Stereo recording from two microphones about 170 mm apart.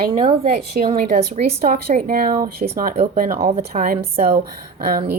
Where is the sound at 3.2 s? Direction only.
55° right (ahead or behind).